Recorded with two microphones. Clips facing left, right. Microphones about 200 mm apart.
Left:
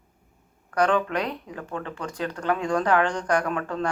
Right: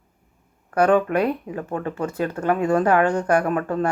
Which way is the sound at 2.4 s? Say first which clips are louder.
Right 4 dB; 25° right (ahead or behind).